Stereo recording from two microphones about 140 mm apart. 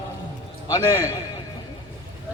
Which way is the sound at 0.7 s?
20° left (ahead or behind).